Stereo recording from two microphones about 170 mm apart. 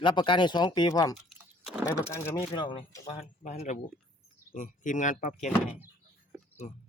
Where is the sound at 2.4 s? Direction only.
30° left (ahead or behind).